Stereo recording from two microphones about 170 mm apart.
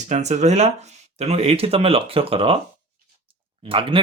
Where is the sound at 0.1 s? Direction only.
40° right (ahead or behind).